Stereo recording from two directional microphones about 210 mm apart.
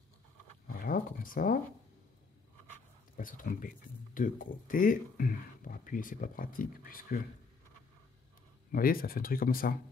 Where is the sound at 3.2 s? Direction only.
40° left (ahead or behind).